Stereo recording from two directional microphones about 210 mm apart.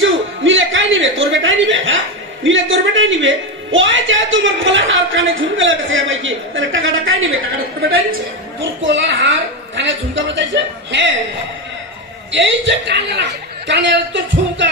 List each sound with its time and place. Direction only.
0.0 s a man's voice: 65° right (ahead or behind)
8.8 s a man's voice: 60° right (ahead or behind)
12.3 s a man's voice: 60° right (ahead or behind)